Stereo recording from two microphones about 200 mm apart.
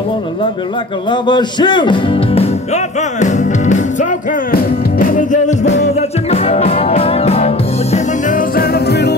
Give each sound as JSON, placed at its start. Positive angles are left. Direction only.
{"t": 1.1, "sound": "speech", "side_deg": 20}
{"t": 5.9, "sound": "music", "side_deg": 30}